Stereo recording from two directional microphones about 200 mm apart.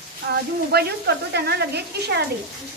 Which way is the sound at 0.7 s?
55° right (ahead or behind).